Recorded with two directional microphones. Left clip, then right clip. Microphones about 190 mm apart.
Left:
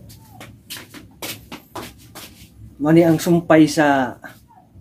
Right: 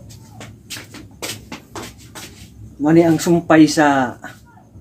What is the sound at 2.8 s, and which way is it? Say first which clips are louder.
Speech: right 1 dB; 40° left (ahead or behind).